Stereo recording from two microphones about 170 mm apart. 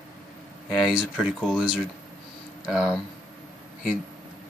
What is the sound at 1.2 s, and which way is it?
Speech, centre (ahead or behind).